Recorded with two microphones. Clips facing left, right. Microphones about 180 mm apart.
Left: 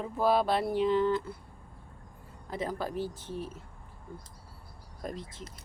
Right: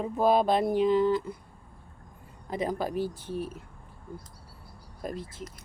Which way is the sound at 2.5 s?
15° right (ahead or behind).